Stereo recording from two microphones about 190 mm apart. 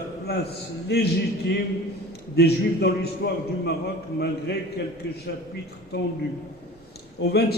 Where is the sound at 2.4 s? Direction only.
60° left (ahead or behind).